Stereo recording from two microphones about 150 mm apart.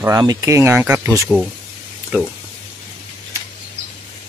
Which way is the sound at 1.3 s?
Centre (ahead or behind).